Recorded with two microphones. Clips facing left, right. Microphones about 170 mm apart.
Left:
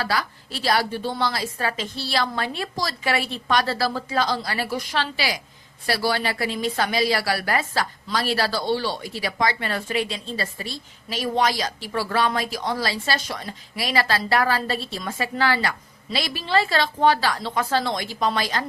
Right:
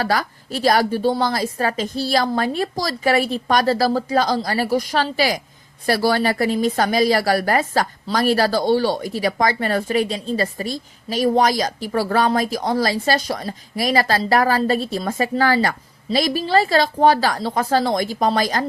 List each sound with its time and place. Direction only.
0.0 s a woman's voice: 45° right (ahead or behind)